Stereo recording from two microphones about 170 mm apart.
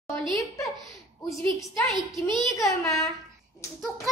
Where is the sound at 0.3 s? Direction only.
20° left (ahead or behind).